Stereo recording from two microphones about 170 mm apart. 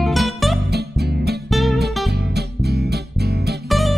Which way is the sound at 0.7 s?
75° right (ahead or behind).